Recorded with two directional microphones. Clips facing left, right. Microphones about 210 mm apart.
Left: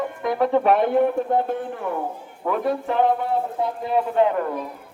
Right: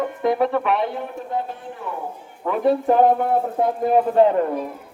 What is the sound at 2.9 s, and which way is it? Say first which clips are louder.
Speech: right 4 dB; 45° right (ahead or behind).